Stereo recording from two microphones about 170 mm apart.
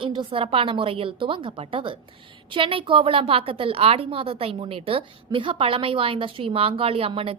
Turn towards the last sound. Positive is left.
turn(degrees=-35)  # may be behind; listen again after turning